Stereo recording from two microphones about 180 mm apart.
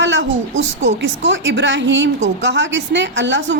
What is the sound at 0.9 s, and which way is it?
A woman's voice, 80° right.